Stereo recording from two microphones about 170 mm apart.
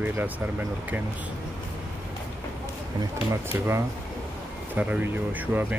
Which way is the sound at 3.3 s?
15° right (ahead or behind).